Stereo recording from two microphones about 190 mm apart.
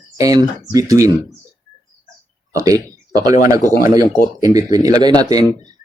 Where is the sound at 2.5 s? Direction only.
20° right (ahead or behind).